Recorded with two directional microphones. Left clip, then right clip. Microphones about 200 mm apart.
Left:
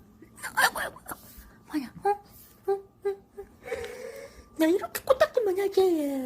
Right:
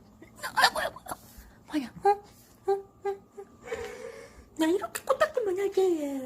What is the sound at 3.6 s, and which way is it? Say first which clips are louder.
Wheeze: left 2 dB; centre (ahead or behind).